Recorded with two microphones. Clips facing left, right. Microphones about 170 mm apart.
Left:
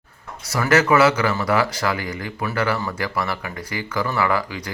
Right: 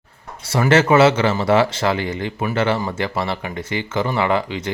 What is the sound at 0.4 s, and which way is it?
Speech, 30° right (ahead or behind).